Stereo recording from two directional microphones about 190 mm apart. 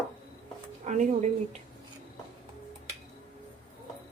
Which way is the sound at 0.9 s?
40° right (ahead or behind).